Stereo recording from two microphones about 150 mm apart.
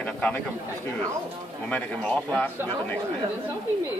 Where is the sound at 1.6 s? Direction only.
10° left (ahead or behind).